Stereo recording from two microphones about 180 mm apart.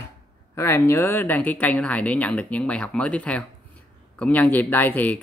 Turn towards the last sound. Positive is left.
turn(degrees=10)  # may be behind; listen again after turning